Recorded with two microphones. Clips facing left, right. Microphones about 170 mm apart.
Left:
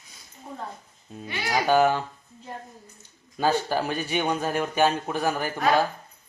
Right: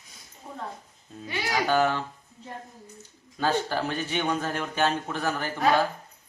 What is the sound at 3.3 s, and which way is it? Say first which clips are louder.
Speech: left 2 dB; 10° left (ahead or behind).